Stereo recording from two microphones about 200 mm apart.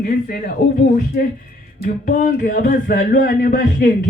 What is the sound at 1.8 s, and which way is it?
Speech, 40° left (ahead or behind).